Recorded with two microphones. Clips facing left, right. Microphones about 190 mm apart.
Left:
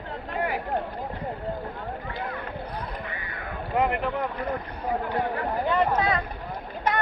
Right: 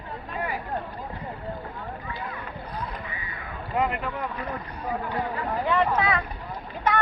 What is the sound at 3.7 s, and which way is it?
Speech, 65° left (ahead or behind).